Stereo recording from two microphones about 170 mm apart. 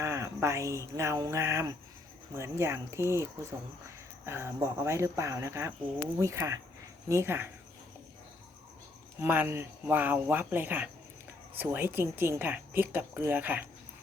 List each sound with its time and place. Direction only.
0.0 s a woman's voice: 15° right (ahead or behind)
4.3 s a woman's voice: 15° right (ahead or behind)
9.2 s a woman's voice: 10° right (ahead or behind)